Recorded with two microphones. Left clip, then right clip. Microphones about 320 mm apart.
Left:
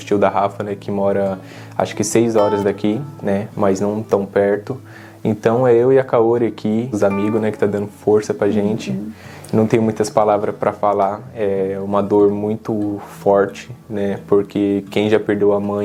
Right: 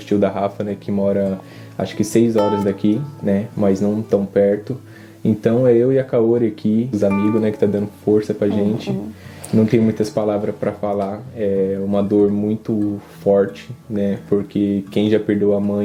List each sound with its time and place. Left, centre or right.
0.1 s speech: left
13.9 s speech: left